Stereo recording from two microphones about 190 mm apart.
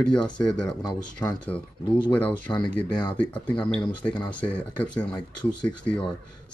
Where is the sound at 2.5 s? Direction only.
15° left (ahead or behind).